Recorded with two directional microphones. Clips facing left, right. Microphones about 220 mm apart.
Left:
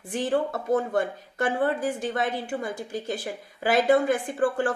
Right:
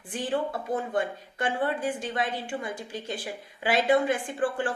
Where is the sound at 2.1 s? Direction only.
45° left (ahead or behind).